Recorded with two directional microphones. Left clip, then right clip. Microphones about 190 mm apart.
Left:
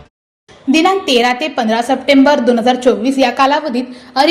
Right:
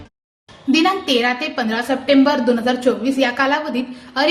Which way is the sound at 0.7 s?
20° left (ahead or behind).